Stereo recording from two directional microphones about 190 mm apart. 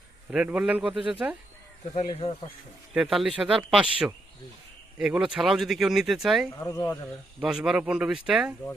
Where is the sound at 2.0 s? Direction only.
35° left (ahead or behind).